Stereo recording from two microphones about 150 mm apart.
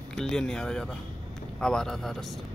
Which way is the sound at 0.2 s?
5° left (ahead or behind).